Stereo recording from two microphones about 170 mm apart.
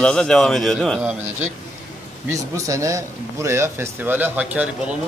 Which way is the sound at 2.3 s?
20° right (ahead or behind).